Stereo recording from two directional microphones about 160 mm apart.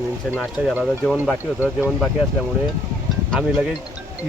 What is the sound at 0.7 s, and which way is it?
Speech, 5° left (ahead or behind).